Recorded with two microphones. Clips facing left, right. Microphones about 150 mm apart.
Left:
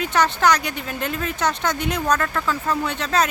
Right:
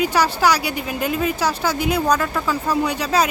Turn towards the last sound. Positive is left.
turn(degrees=-10)  # may be behind; listen again after turning